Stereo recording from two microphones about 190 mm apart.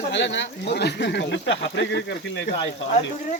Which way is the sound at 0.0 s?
70° left (ahead or behind).